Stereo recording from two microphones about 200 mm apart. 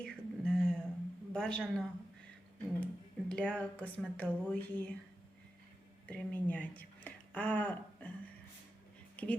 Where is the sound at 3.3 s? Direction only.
5° left (ahead or behind).